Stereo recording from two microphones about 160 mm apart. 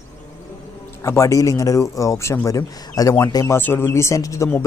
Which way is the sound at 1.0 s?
20° left (ahead or behind).